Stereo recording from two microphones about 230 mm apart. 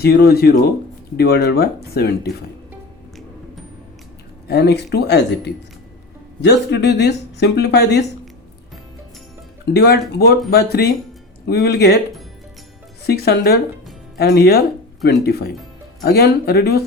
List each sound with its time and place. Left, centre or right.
0.0 s speech: left
4.4 s speech: left
9.7 s speech: left
13.1 s speech: left